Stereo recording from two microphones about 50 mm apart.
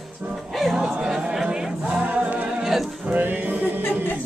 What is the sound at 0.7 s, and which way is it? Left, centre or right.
Music, centre.